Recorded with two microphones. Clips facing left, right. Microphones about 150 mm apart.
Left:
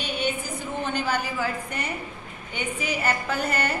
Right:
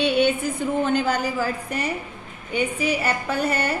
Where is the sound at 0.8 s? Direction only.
45° right (ahead or behind).